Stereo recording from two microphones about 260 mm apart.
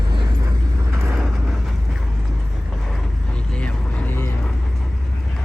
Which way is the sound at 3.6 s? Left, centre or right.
Centre.